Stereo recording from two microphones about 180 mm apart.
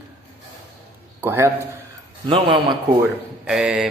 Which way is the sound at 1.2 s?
10° right (ahead or behind).